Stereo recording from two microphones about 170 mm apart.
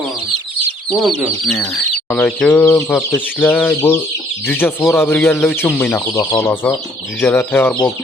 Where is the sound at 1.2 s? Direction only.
Centre (ahead or behind).